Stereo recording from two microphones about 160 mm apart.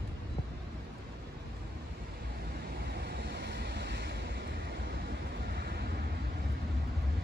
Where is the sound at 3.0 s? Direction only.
90° right.